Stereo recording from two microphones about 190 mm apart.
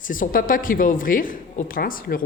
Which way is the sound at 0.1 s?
45° left (ahead or behind).